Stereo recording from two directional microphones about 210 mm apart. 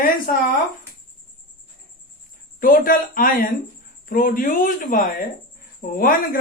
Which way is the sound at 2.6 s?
40° left (ahead or behind).